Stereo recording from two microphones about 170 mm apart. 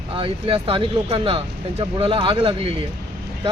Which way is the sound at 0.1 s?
30° right (ahead or behind).